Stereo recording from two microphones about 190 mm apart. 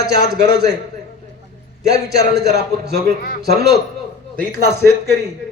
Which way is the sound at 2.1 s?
60° right (ahead or behind).